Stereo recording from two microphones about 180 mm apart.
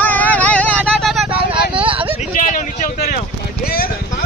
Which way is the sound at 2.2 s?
45° left (ahead or behind).